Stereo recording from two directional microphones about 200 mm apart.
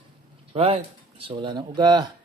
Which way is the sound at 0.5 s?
30° right (ahead or behind).